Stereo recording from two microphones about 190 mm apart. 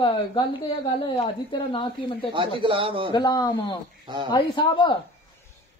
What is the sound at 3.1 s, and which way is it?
Speech, 20° left (ahead or behind).